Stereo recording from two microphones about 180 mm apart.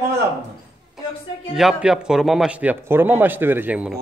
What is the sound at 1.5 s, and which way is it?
A man's voice, centre (ahead or behind).